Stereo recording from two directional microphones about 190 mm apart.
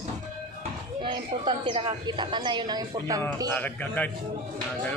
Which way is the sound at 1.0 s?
25° right (ahead or behind).